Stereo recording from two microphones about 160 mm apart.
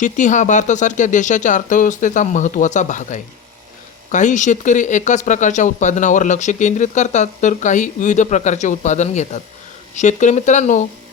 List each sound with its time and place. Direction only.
0.0 s speech: 50° left (ahead or behind)